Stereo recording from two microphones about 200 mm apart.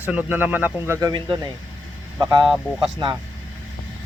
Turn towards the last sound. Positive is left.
turn(degrees=-20)  # may be behind; listen again after turning